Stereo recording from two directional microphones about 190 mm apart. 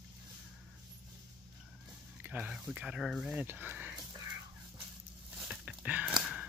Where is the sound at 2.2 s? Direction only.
5° right (ahead or behind).